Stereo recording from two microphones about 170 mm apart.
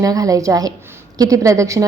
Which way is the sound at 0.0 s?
20° right (ahead or behind).